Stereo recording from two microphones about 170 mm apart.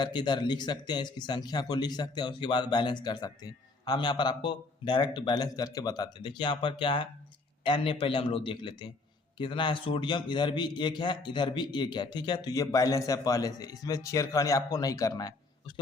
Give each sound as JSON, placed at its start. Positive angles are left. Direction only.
{"t": 0.0, "sound": "a man's voice", "side_deg": 25}